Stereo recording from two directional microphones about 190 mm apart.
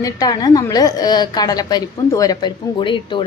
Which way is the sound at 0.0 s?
20° left (ahead or behind).